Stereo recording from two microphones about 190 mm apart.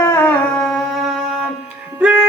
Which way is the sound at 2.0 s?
10° right (ahead or behind).